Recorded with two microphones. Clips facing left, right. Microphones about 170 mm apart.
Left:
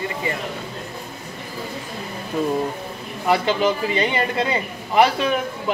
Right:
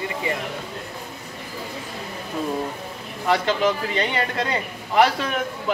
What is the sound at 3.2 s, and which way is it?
A man's voice, 5° left (ahead or behind).